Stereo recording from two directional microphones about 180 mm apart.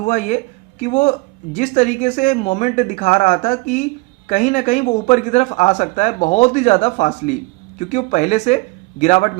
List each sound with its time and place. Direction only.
0.0 s speech: 45° left (ahead or behind)